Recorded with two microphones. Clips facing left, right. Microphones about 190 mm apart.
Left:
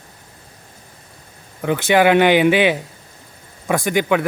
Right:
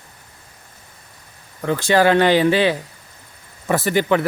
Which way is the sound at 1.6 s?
15° left (ahead or behind).